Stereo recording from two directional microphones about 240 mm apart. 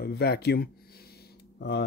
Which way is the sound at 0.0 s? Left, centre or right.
Left.